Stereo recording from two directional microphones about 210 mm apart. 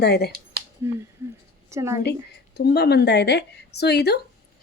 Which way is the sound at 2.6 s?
50° left (ahead or behind).